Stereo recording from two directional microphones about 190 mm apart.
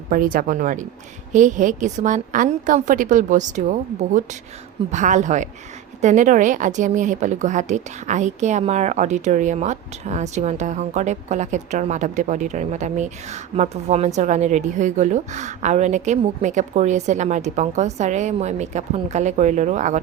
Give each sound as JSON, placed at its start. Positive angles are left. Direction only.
{"t": 0.1, "sound": "a woman's voice", "side_deg": -45}